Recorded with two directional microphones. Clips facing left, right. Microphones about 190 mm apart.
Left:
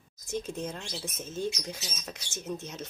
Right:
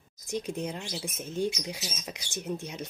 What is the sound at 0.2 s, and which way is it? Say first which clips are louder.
Speech: right 2 dB; 15° right (ahead or behind).